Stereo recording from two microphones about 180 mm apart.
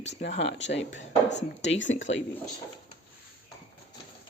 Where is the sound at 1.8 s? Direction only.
90° left.